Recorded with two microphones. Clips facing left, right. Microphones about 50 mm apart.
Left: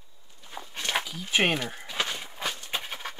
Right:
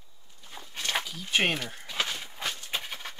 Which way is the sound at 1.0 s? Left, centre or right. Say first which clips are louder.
Left 2 dB; centre.